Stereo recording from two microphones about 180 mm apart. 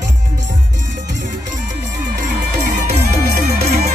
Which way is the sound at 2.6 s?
60° right (ahead or behind).